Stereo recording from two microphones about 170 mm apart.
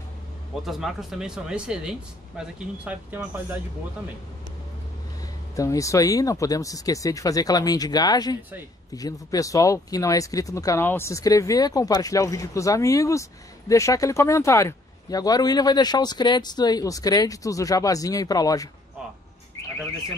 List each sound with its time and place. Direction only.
0.7 s speech: centre (ahead or behind)
5.6 s speech: 20° left (ahead or behind)